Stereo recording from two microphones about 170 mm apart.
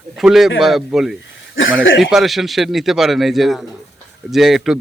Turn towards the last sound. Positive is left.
turn(degrees=0)  # may be behind; listen again after turning